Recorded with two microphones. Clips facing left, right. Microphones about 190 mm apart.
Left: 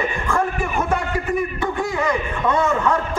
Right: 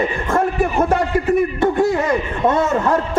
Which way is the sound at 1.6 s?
65° right (ahead or behind).